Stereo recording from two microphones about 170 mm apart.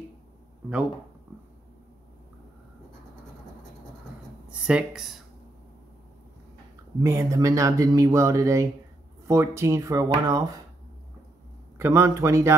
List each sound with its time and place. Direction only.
4.5 s speech: 5° right (ahead or behind)
7.0 s speech: 20° right (ahead or behind)
11.8 s speech: 15° right (ahead or behind)